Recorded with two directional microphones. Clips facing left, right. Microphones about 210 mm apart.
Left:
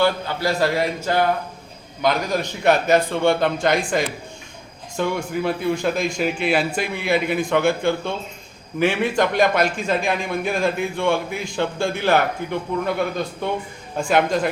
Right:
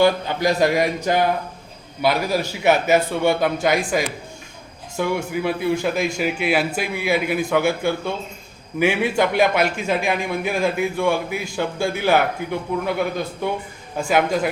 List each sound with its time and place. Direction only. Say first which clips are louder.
0.0 s a man's voice: right 3 dB; 15° right (ahead or behind)